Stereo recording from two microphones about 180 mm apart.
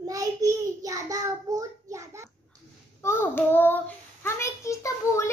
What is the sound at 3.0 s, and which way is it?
A woman's voice, 10° left (ahead or behind).